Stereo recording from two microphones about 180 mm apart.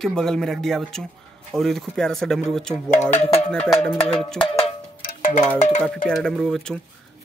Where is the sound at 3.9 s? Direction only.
5° left (ahead or behind).